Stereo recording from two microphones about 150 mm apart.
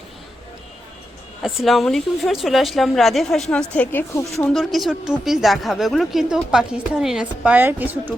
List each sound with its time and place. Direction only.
1.4 s a woman's voice: centre (ahead or behind)
4.1 s speech: 20° left (ahead or behind)
4.4 s a woman's voice: 5° left (ahead or behind)